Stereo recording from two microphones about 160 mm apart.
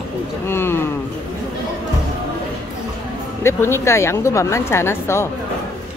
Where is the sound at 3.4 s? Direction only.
15° left (ahead or behind).